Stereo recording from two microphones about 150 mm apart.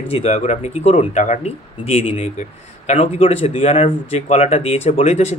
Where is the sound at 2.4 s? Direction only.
50° left (ahead or behind).